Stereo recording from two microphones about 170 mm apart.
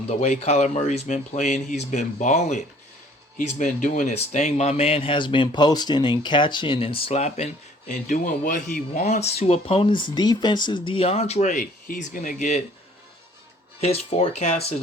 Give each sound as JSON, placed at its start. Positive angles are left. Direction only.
{"t": 0.1, "sound": "speech", "side_deg": 40}
{"t": 13.8, "sound": "speech", "side_deg": 40}